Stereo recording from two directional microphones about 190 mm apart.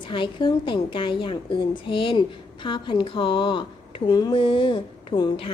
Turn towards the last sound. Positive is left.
turn(degrees=25)  # may be behind; listen again after turning